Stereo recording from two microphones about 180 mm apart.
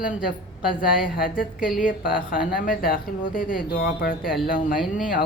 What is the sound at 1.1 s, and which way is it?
Speech, 50° left (ahead or behind).